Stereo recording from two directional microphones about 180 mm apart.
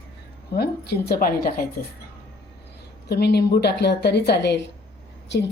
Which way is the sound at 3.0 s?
65° left (ahead or behind).